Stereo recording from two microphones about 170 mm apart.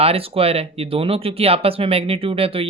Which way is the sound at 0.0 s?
35° right (ahead or behind).